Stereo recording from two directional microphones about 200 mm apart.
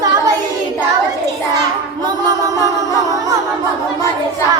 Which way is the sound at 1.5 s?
20° right (ahead or behind).